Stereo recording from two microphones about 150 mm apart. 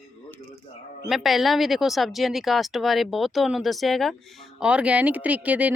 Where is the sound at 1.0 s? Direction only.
Centre (ahead or behind).